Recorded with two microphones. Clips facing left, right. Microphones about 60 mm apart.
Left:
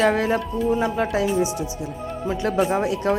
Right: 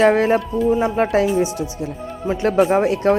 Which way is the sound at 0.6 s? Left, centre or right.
Centre.